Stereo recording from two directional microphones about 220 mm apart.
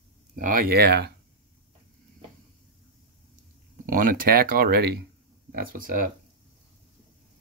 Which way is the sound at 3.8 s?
40° right (ahead or behind).